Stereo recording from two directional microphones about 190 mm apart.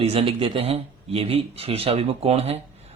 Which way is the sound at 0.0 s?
30° right (ahead or behind).